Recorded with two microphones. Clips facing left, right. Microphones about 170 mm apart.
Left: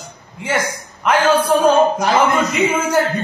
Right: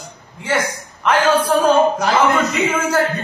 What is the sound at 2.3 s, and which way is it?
Speech, 10° left (ahead or behind).